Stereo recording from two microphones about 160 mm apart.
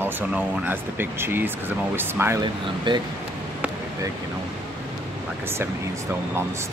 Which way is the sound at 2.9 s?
30° right (ahead or behind).